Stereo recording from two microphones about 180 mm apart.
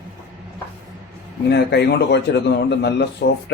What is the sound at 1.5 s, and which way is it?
A man's voice, 65° left (ahead or behind).